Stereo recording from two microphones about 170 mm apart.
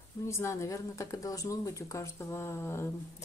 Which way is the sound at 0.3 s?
15° left (ahead or behind).